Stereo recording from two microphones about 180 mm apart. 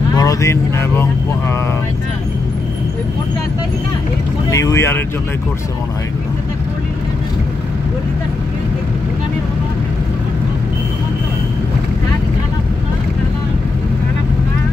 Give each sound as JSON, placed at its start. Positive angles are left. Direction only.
{"t": 0.1, "sound": "speech", "side_deg": 20}
{"t": 4.5, "sound": "speech", "side_deg": 15}